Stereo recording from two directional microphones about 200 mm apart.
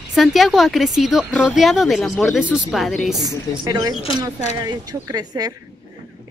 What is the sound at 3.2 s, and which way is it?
A woman's voice, 20° right (ahead or behind).